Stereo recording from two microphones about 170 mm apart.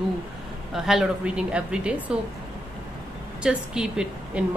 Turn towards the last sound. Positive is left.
turn(degrees=-5)  # may be behind; listen again after turning